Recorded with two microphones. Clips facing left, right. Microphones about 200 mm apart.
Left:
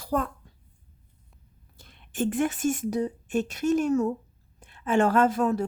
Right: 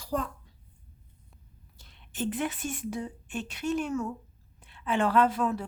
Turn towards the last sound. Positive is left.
turn(degrees=45)  # may be behind; listen again after turning